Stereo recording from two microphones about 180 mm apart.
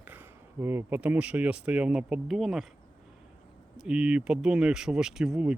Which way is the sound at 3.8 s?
5° right (ahead or behind).